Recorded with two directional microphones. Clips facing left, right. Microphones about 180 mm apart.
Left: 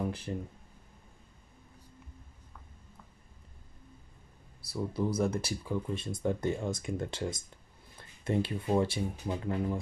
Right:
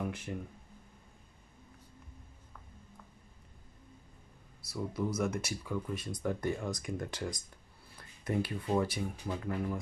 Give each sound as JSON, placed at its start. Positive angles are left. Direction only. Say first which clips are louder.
{"t": 0.0, "sound": "speech", "louder": "left 3 dB", "side_deg": 30}
{"t": 4.6, "sound": "speech", "louder": "left 3 dB", "side_deg": 30}